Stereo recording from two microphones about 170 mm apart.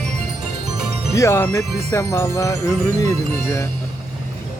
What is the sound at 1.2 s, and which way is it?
Speech, 15° left (ahead or behind).